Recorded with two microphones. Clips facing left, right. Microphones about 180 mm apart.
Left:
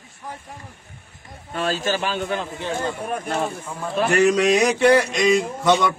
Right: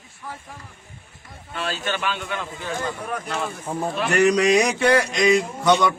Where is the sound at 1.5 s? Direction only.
40° left (ahead or behind).